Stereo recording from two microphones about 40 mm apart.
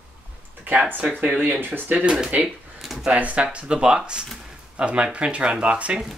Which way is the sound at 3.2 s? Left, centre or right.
Right.